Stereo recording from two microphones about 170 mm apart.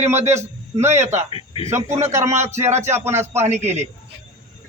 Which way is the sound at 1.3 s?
35° left (ahead or behind).